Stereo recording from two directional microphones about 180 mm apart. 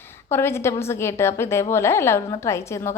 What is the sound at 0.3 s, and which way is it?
A woman's voice, 15° left (ahead or behind).